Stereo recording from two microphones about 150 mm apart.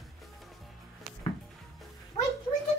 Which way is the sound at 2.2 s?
40° left (ahead or behind).